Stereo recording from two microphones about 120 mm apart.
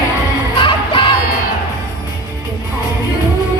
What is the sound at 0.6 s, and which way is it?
Music, 45° left (ahead or behind).